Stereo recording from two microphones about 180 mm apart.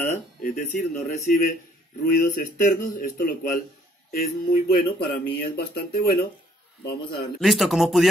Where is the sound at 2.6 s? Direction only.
50° left (ahead or behind).